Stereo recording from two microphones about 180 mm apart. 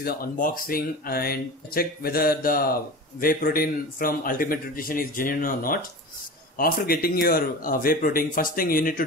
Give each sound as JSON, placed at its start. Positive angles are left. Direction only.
{"t": 0.0, "sound": "speech", "side_deg": 55}